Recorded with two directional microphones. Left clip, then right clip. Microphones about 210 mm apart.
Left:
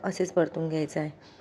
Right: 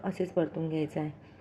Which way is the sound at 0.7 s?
65° left (ahead or behind).